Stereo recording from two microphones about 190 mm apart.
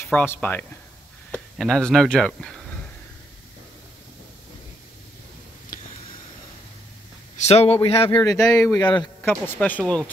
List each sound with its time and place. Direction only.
0.1 s speech: 10° left (ahead or behind)
7.3 s speech: 35° left (ahead or behind)
8.2 s speech: 15° left (ahead or behind)
9.2 s speech: 10° left (ahead or behind)